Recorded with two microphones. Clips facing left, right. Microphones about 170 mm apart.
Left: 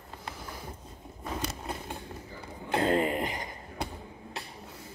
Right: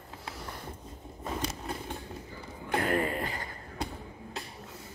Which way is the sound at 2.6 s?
20° left (ahead or behind).